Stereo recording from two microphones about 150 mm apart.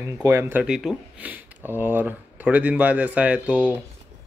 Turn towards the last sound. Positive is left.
turn(degrees=-10)  # may be behind; listen again after turning